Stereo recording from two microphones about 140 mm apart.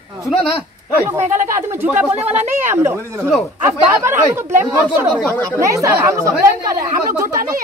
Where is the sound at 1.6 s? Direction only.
15° right (ahead or behind).